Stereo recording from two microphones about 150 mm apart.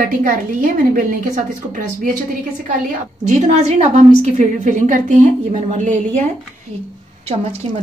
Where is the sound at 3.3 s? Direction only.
50° right (ahead or behind).